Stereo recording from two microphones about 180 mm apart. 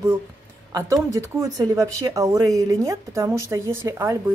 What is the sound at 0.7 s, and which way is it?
A woman's voice, 20° right (ahead or behind).